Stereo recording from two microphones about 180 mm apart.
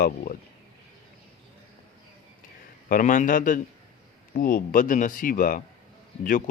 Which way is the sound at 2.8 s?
50° left (ahead or behind).